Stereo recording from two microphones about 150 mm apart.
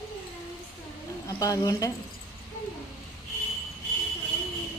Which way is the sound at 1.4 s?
25° left (ahead or behind).